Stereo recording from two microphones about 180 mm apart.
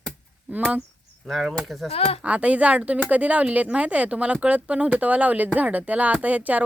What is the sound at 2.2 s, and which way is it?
Speech, 5° right (ahead or behind).